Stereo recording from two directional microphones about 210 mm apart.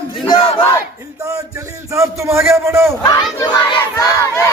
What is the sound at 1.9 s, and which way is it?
A man's voice, 15° right (ahead or behind).